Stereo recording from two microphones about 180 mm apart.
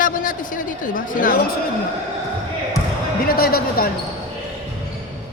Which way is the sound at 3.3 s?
55° left (ahead or behind).